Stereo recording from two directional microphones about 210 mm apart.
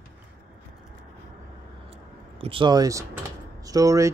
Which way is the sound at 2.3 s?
25° right (ahead or behind).